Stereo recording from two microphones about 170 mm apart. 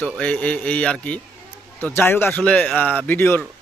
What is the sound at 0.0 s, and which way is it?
Speech, 10° left (ahead or behind).